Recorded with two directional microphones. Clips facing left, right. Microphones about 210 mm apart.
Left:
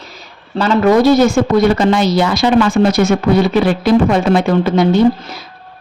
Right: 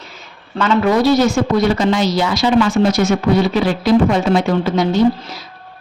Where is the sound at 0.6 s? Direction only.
40° left (ahead or behind).